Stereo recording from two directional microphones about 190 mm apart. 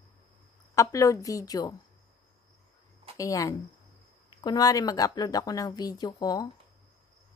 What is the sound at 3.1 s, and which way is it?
A woman's voice, 15° left (ahead or behind).